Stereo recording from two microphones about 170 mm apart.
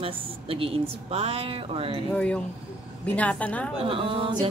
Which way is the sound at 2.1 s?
5° left (ahead or behind).